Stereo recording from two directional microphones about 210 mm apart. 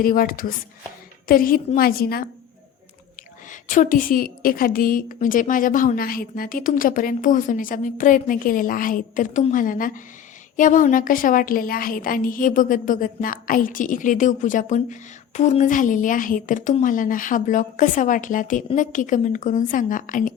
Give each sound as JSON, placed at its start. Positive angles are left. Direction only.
{"t": 0.0, "sound": "a woman's voice", "side_deg": 45}
{"t": 3.5, "sound": "a woman's voice", "side_deg": 40}